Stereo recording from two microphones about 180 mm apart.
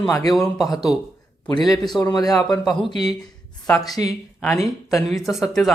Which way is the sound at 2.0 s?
20° left (ahead or behind).